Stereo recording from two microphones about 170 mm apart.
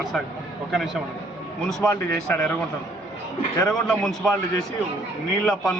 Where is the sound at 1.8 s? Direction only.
15° left (ahead or behind).